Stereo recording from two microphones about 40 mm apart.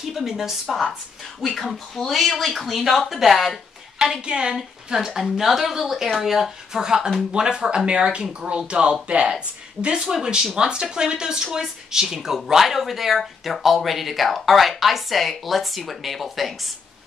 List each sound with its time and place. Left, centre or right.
0.0 s a woman's voice: centre
4.2 s speech: right
4.9 s a woman's voice: centre
6.8 s a woman's voice: centre